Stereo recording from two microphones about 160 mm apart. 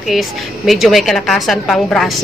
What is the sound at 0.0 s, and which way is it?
A woman's voice, centre (ahead or behind).